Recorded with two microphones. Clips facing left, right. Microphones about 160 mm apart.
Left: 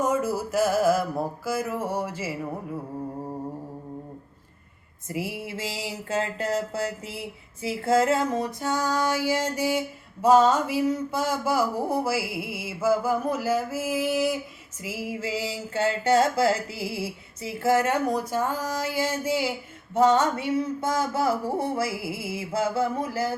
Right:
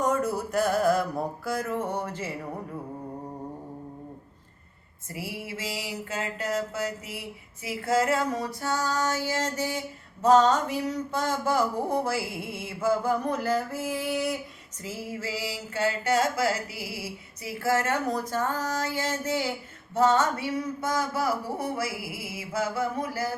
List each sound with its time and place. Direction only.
0.0 s mantra: centre (ahead or behind)
5.0 s speech: 20° left (ahead or behind)
7.6 s a sound: 25° left (ahead or behind); by 14.3 s centre (ahead or behind)
14.8 s speech: 10° left (ahead or behind); by 23.3 s 25° left (ahead or behind)